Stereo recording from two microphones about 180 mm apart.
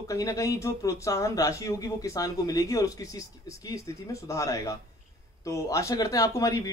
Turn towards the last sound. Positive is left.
turn(degrees=20)  # may be behind; listen again after turning